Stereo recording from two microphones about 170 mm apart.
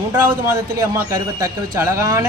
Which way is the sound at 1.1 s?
20° right (ahead or behind).